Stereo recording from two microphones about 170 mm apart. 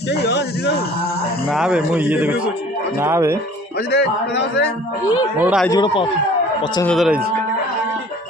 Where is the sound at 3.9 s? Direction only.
80° left.